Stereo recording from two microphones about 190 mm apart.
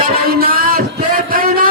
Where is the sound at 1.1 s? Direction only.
50° right (ahead or behind).